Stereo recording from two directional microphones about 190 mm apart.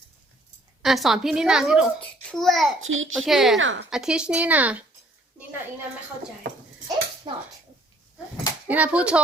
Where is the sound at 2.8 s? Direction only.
90° right.